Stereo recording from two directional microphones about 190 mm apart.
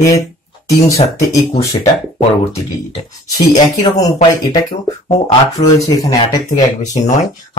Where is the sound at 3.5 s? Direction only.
20° left (ahead or behind).